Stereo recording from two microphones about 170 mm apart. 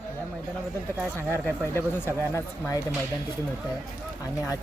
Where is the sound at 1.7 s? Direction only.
15° left (ahead or behind).